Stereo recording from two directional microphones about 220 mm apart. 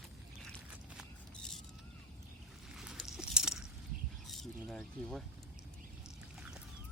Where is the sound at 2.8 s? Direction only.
5° right (ahead or behind).